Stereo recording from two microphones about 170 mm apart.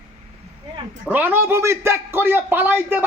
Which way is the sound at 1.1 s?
10° right (ahead or behind).